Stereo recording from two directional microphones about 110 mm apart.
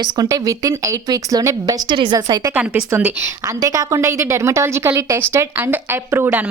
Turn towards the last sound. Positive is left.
turn(degrees=-15)  # may be behind; listen again after turning